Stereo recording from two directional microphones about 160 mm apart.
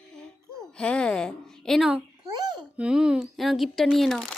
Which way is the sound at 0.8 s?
5° left (ahead or behind).